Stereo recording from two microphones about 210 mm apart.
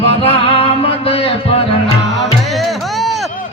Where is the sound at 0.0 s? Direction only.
30° left (ahead or behind).